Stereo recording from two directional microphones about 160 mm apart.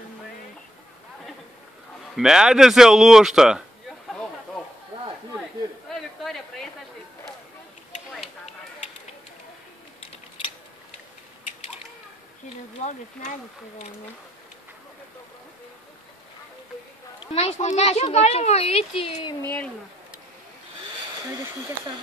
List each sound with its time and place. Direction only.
2.1 s speech: 5° right (ahead or behind)
6.2 s a sound: centre (ahead or behind)
17.3 s speech: 40° left (ahead or behind)
19.4 s speech: 10° left (ahead or behind)